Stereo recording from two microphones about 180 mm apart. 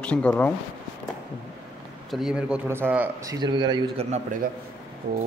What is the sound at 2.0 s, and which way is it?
A man's voice, centre (ahead or behind).